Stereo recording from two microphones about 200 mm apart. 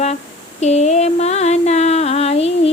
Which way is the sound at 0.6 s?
35° left (ahead or behind).